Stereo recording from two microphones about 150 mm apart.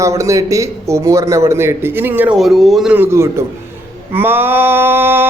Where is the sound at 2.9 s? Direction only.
15° right (ahead or behind).